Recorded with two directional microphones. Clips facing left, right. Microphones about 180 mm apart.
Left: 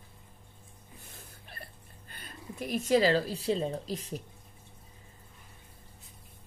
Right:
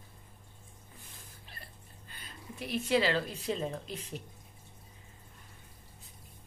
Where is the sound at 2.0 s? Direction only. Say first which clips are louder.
Left 3 dB; 50° left (ahead or behind).